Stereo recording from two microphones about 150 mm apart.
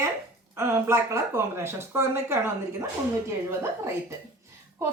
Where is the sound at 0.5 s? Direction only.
15° right (ahead or behind).